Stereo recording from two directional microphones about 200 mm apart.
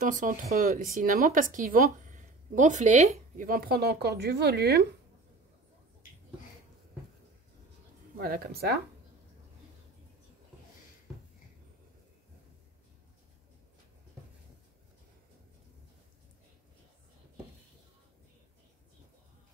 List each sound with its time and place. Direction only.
0.0 s speech: 40° right (ahead or behind)
8.2 s speech: 50° right (ahead or behind)